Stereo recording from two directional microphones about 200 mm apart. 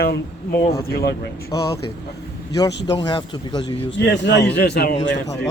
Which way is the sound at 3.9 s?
60° left (ahead or behind).